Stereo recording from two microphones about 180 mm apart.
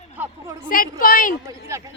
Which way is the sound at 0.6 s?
50° left (ahead or behind).